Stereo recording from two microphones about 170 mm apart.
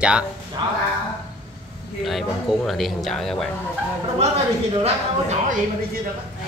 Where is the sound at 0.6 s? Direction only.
30° right (ahead or behind).